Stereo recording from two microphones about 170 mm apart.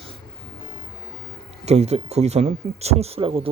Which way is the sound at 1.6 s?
40° right (ahead or behind).